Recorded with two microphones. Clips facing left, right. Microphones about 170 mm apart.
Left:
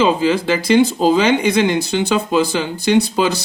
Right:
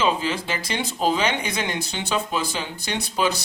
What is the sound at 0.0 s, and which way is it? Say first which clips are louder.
A man's voice: left 8 dB; 75° left (ahead or behind).